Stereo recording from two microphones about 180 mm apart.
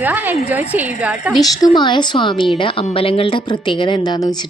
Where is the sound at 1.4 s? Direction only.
20° left (ahead or behind).